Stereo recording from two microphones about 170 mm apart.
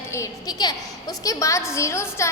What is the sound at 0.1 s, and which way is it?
A woman's voice, 20° left (ahead or behind).